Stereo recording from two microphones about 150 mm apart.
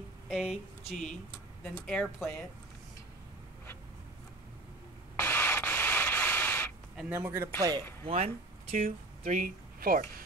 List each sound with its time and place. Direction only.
0.3 s speech: centre (ahead or behind)
5.1 s a sound: 15° left (ahead or behind)
7.1 s speech: 15° right (ahead or behind)
8.0 s speech: 40° right (ahead or behind)
8.7 s speech: 65° right (ahead or behind)